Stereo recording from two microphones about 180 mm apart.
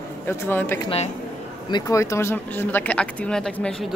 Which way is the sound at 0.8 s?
35° left (ahead or behind).